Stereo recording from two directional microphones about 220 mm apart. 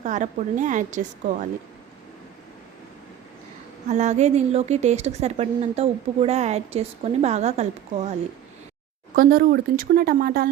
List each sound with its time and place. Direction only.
0.0 s a woman's voice: 35° right (ahead or behind)
3.8 s a woman's voice: 30° right (ahead or behind)
9.1 s a woman's voice: 40° right (ahead or behind)